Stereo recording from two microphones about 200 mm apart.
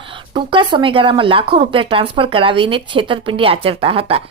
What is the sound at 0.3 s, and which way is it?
Speech, 25° right (ahead or behind).